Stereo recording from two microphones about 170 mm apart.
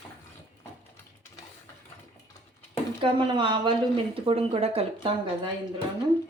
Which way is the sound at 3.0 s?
30° right (ahead or behind).